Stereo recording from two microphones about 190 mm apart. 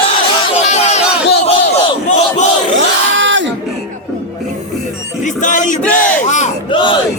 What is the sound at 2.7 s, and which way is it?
Crowd, 75° right (ahead or behind).